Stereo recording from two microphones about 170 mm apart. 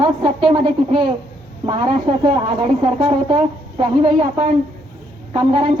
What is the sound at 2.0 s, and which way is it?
A woman's voice, 35° right (ahead or behind).